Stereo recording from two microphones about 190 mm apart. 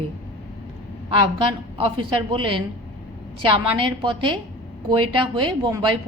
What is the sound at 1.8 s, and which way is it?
Speech, 25° right (ahead or behind).